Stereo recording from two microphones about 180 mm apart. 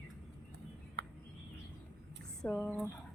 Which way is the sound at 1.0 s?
70° right (ahead or behind).